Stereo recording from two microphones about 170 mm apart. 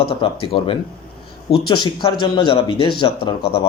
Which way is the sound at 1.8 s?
30° left (ahead or behind).